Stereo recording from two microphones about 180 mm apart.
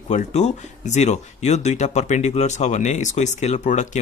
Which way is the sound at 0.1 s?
40° left (ahead or behind).